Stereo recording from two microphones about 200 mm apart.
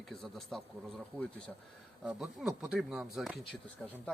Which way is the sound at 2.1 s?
5° right (ahead or behind).